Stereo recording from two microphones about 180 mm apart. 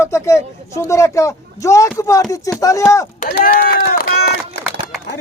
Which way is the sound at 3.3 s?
55° left (ahead or behind).